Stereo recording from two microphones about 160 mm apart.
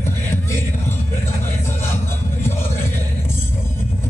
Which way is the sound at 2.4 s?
15° left (ahead or behind).